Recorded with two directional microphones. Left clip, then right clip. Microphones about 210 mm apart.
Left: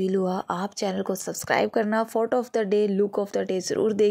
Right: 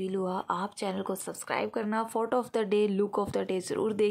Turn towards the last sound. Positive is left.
turn(degrees=5)  # may be behind; listen again after turning